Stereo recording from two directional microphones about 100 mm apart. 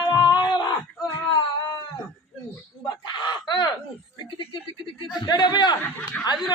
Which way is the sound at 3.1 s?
50° left (ahead or behind).